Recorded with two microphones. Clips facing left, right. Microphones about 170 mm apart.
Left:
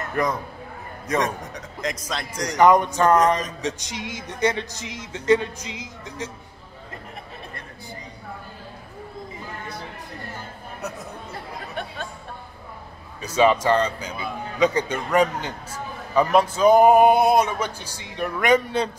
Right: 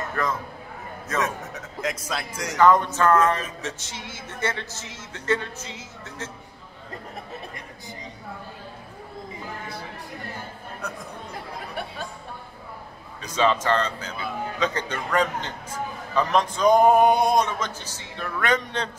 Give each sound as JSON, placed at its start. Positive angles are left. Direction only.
{"t": 0.1, "sound": "speech", "side_deg": 15}
{"t": 1.2, "sound": "a man's voice", "side_deg": -5}
{"t": 2.5, "sound": "a man's voice", "side_deg": 15}
{"t": 10.8, "sound": "a man's voice", "side_deg": 5}
{"t": 13.2, "sound": "a man's voice", "side_deg": 10}